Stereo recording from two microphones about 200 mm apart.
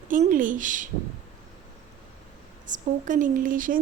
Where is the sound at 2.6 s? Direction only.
40° right (ahead or behind).